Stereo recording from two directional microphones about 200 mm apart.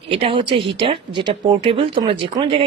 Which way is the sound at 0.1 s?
25° right (ahead or behind).